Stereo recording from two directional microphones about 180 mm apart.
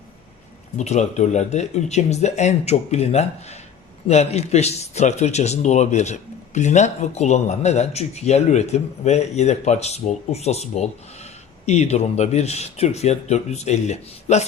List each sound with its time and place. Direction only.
0.8 s a man's voice: 40° left (ahead or behind)